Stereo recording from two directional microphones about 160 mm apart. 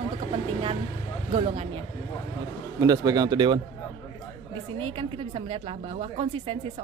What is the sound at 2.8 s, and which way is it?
Speech, 20° right (ahead or behind).